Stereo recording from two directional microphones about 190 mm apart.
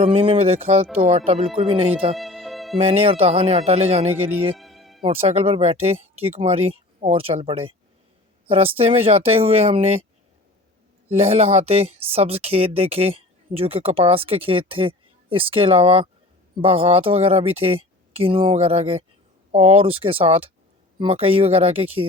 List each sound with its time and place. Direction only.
0.0 s speech: 30° right (ahead or behind)
2.1 s music: centre (ahead or behind)
2.7 s speech: 30° right (ahead or behind)
4.1 s speech: 10° right (ahead or behind)
4.5 s music: centre (ahead or behind)
5.0 s speech: 30° right (ahead or behind)
11.1 s speech: 35° right (ahead or behind)